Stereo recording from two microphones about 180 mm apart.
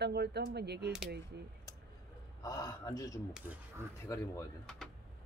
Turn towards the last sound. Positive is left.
turn(degrees=15)  # may be behind; listen again after turning